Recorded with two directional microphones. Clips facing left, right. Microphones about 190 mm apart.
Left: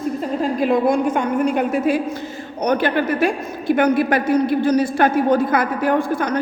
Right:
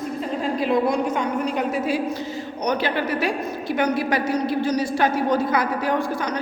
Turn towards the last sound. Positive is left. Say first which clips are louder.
# left 5 dB
turn(degrees=55)  # may be behind; listen again after turning